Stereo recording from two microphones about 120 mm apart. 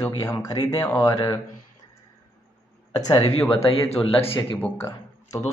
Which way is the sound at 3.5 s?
50° left (ahead or behind).